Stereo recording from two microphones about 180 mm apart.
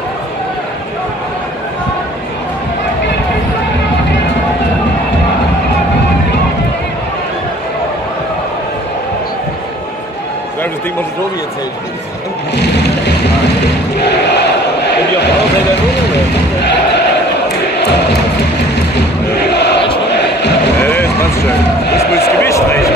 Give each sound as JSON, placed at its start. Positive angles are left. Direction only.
{"t": 12.5, "sound": "music", "side_deg": 70}
{"t": 13.9, "sound": "battle cry", "side_deg": 70}
{"t": 17.7, "sound": "music", "side_deg": 70}
{"t": 19.3, "sound": "chant", "side_deg": 70}
{"t": 20.1, "sound": "music", "side_deg": 70}
{"t": 20.8, "sound": "vehicle", "side_deg": 10}
{"t": 22.4, "sound": "speech", "side_deg": 15}